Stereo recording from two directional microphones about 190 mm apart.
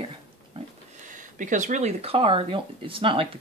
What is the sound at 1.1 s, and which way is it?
Speech, 45° right (ahead or behind).